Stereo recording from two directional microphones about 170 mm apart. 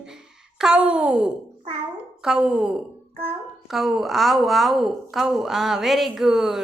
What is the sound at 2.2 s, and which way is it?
A woman's voice, 5° right (ahead or behind).